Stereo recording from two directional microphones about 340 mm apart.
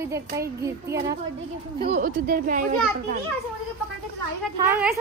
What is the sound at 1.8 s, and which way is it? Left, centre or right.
Speech, right.